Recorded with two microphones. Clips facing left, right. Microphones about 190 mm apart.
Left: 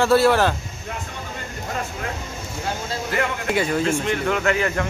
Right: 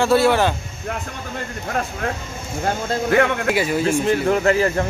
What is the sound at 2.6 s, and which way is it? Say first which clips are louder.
Speech: right 7 dB; 60° right (ahead or behind).